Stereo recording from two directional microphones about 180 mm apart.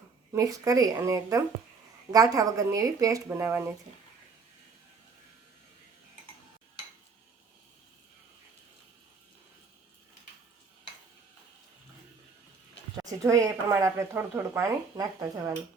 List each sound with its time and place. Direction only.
0.3 s speech: 20° right (ahead or behind)
13.0 s speech: 20° right (ahead or behind)